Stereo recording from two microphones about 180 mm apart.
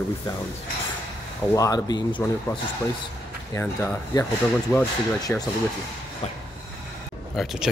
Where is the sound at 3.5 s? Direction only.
15° left (ahead or behind).